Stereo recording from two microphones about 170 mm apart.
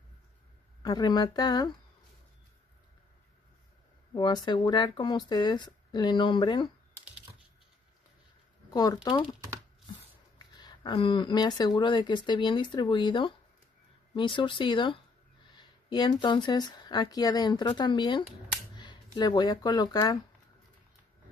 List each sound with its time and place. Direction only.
0.8 s speech: 25° left (ahead or behind)
4.1 s speech: 25° left (ahead or behind)
8.6 s speech: 20° left (ahead or behind)
10.5 s speech: 25° left (ahead or behind)